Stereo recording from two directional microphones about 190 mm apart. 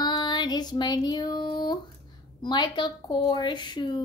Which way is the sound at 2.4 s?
20° left (ahead or behind).